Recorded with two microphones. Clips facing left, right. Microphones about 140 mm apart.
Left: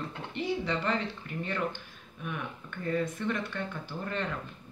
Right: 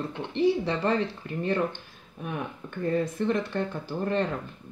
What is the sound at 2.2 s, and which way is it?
Speech, 35° right (ahead or behind).